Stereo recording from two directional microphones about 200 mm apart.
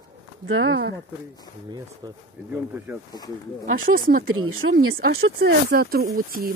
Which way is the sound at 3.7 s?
45° right (ahead or behind).